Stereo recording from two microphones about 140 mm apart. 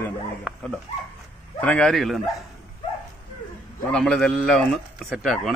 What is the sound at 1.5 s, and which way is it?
Speech, 10° left (ahead or behind).